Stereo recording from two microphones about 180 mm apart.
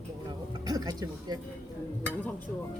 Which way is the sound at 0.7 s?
20° right (ahead or behind).